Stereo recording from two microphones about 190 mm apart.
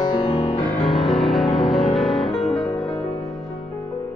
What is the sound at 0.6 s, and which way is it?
Music, centre (ahead or behind).